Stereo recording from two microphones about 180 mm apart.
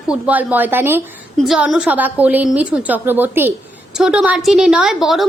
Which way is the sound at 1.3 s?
Centre (ahead or behind).